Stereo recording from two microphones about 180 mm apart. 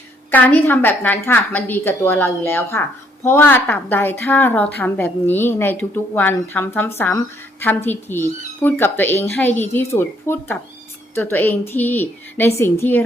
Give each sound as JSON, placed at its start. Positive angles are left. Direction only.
{"t": 0.3, "sound": "a woman's voice", "side_deg": 10}